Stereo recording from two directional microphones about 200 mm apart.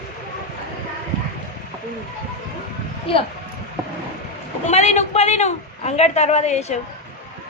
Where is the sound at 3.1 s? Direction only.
25° left (ahead or behind).